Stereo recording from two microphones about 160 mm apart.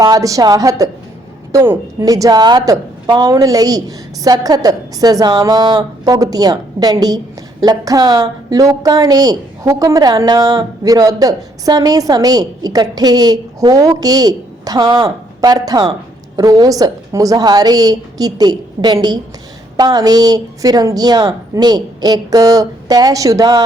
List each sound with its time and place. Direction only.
0.0 s a woman's voice: 25° right (ahead or behind)